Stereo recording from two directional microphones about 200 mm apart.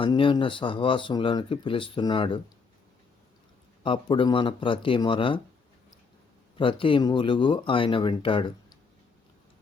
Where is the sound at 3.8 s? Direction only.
25° left (ahead or behind).